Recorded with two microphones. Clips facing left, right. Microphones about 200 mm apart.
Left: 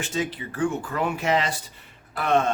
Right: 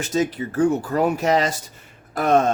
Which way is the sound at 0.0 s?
40° right (ahead or behind).